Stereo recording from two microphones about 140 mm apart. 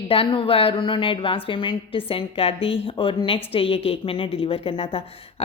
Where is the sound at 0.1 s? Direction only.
40° left (ahead or behind).